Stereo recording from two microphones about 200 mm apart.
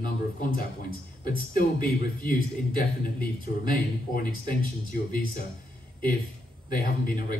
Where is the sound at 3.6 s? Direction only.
45° left (ahead or behind).